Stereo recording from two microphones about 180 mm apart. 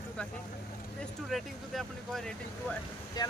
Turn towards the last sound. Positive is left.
turn(degrees=20)  # may be behind; listen again after turning